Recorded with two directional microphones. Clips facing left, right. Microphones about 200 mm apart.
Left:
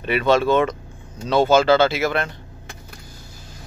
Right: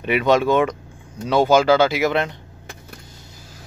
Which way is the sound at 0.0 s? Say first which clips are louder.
Right 1 dB; 15° right (ahead or behind).